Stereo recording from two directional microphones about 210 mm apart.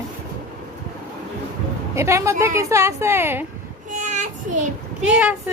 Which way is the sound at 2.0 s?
15° right (ahead or behind).